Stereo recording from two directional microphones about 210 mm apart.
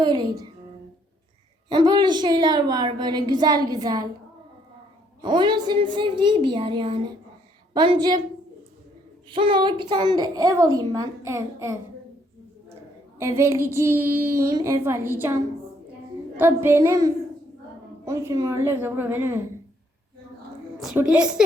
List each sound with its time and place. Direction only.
0.0 s a woman's voice: 20° right (ahead or behind)
1.7 s a woman's voice: 20° right (ahead or behind)
5.2 s a woman's voice: 20° right (ahead or behind)
9.3 s a woman's voice: 25° right (ahead or behind)
13.1 s a woman's voice: 15° right (ahead or behind)
16.4 s a woman's voice: 10° right (ahead or behind)
20.7 s a woman's voice: 5° right (ahead or behind)